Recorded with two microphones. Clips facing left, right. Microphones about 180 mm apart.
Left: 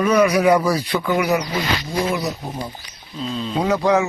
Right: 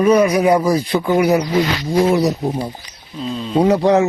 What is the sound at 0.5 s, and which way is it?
Speech, 15° right (ahead or behind).